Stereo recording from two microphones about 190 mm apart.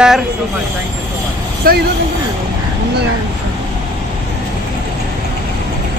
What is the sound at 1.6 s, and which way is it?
Speech, 50° right (ahead or behind).